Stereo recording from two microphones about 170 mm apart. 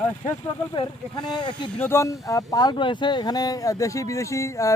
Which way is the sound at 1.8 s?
15° left (ahead or behind).